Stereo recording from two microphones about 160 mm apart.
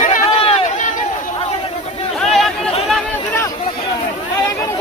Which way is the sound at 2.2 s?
Centre (ahead or behind).